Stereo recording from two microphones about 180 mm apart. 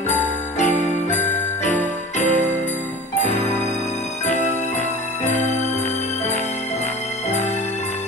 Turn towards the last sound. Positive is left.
turn(degrees=40)  # may be behind; listen again after turning